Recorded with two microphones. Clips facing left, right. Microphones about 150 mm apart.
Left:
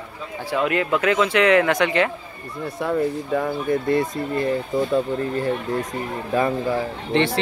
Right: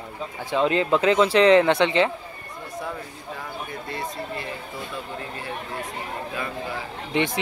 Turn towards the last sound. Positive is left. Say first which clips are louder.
# left 4 dB
turn(degrees=-15)  # may be behind; listen again after turning